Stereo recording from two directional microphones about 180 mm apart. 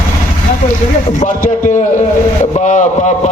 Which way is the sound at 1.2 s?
45° left (ahead or behind).